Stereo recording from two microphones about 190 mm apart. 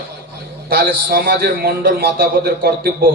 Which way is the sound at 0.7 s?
55° right (ahead or behind).